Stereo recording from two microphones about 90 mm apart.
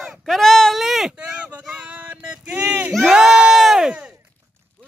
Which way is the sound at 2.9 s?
5° right (ahead or behind).